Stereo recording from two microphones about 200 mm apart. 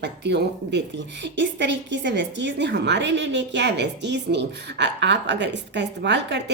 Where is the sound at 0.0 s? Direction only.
60° right (ahead or behind).